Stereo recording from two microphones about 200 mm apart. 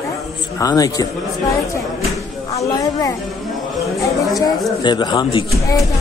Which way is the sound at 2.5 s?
15° left (ahead or behind).